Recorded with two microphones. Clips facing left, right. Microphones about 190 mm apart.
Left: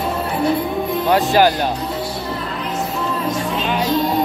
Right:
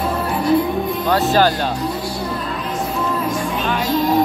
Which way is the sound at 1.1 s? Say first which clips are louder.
Left 1 dB; 15° left (ahead or behind).